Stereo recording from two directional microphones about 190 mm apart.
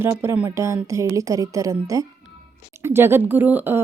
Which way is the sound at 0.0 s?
15° right (ahead or behind).